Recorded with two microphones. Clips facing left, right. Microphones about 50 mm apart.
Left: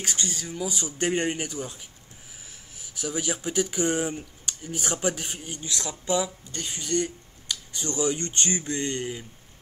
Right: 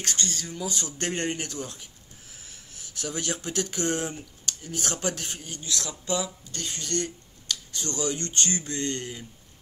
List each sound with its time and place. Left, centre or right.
0.0 s speech: centre